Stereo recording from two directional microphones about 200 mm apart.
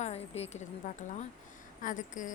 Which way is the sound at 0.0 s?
30° left (ahead or behind).